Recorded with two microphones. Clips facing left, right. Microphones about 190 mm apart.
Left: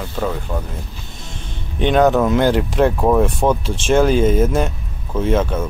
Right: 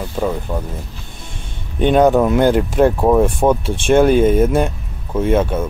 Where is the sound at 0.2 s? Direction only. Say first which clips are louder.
Right 3 dB; 5° right (ahead or behind).